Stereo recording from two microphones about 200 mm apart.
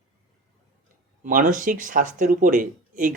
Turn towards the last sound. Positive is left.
turn(degrees=-45)  # may be behind; listen again after turning